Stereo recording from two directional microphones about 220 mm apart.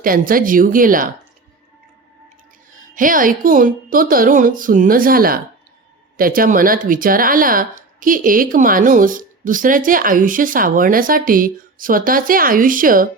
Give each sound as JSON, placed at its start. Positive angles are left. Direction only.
{"t": 0.0, "sound": "speech", "side_deg": -40}
{"t": 2.9, "sound": "speech", "side_deg": -40}